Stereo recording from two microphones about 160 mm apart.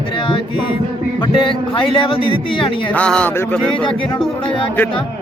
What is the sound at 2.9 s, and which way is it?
Speech, 5° left (ahead or behind).